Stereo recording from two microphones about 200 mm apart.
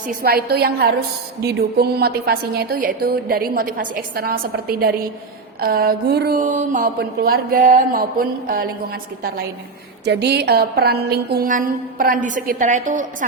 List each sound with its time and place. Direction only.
0.1 s speech: 50° right (ahead or behind)